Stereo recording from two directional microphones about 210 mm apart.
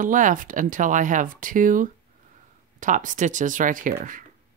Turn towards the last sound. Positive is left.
turn(degrees=-40)  # may be behind; listen again after turning